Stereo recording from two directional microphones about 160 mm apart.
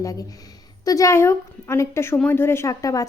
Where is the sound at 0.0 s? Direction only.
20° left (ahead or behind).